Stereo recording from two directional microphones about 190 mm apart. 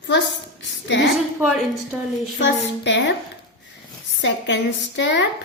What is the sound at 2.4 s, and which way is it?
Speech, 70° left (ahead or behind).